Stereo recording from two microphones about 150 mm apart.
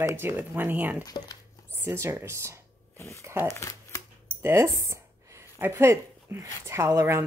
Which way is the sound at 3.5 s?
20° left (ahead or behind).